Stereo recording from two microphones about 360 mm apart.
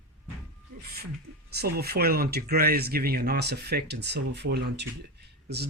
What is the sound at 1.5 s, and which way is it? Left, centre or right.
Speech, right.